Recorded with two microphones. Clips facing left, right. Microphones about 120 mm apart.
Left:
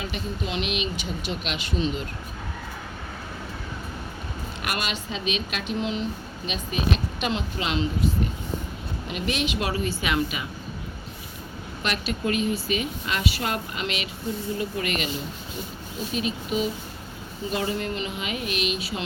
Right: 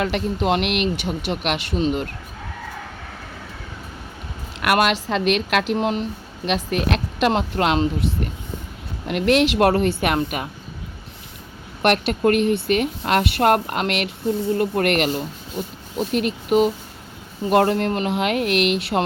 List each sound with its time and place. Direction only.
0.0 s speech: 75° right (ahead or behind); by 2.0 s 60° right (ahead or behind)
4.6 s speech: 70° right (ahead or behind)
6.4 s speech: 75° right (ahead or behind)
9.0 s speech: 75° right (ahead or behind)
11.8 s speech: 65° right (ahead or behind)